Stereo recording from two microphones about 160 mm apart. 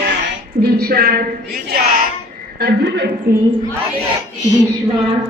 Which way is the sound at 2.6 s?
90° right.